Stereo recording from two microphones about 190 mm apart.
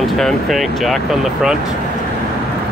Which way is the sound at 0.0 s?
Centre (ahead or behind).